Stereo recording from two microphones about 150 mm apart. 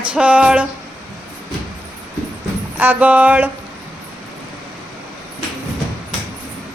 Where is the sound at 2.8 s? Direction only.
10° right (ahead or behind).